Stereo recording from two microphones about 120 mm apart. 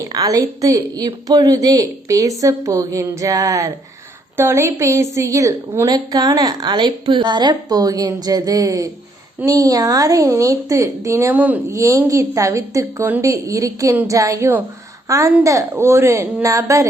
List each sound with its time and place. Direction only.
0.0 s a woman's voice: 30° right (ahead or behind); by 11.6 s 15° right (ahead or behind)
11.7 s a woman's voice: 25° right (ahead or behind)